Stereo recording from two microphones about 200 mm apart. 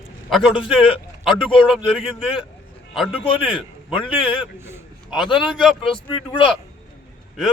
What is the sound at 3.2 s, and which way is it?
Speech, 25° left (ahead or behind).